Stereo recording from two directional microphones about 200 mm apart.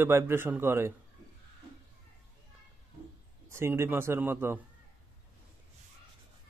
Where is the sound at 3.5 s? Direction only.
15° right (ahead or behind).